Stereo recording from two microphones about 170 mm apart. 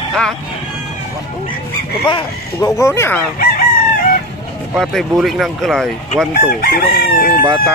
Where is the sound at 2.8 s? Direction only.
15° left (ahead or behind).